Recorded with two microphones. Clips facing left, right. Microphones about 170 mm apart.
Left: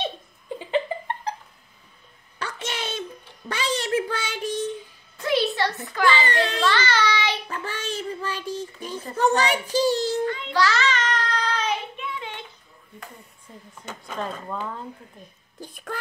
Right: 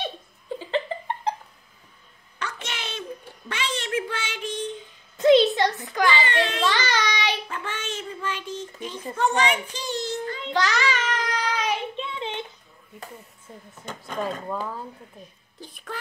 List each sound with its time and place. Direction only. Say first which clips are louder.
2.3 s a sound: left 3 dB; 30° left (ahead or behind)
3.4 s child singing: left 4 dB; 35° left (ahead or behind)
5.1 s a sound: right 7 dB; 20° right (ahead or behind)
6.2 s a sound: left 1 dB; 40° left (ahead or behind)
6.6 s child singing: left 2 dB; 15° right (ahead or behind)
7.4 s child singing: left 1 dB; 35° left (ahead or behind)
9.1 s a child's voice: left 2 dB; 35° left (ahead or behind)
10.2 s child singing: left 5 dB; 35° right (ahead or behind)
10.5 s child singing: even; 15° right (ahead or behind)
12.0 s child singing: right 3 dB; 25° right (ahead or behind)
13.8 s speech: right 2 dB; centre (ahead or behind)
15.6 s a sound: left 3 dB; 45° left (ahead or behind)